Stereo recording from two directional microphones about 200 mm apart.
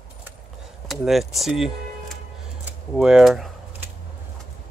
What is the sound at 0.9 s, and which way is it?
Speech, centre (ahead or behind).